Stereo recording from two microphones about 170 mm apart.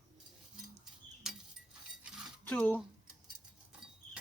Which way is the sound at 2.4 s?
10° left (ahead or behind).